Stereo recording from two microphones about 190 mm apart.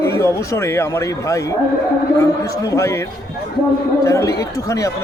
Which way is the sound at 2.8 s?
15° left (ahead or behind).